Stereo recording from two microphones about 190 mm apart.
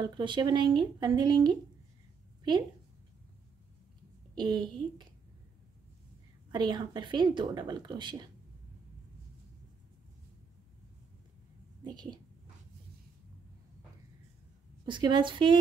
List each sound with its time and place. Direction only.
0.0 s a woman's voice: 25° right (ahead or behind)
4.4 s a woman's voice: 25° right (ahead or behind)
6.5 s a woman's voice: 20° right (ahead or behind)
11.8 s a woman's voice: 20° right (ahead or behind)
14.9 s a woman's voice: 25° right (ahead or behind)